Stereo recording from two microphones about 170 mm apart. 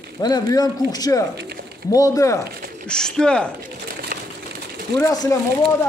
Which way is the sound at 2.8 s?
5° left (ahead or behind).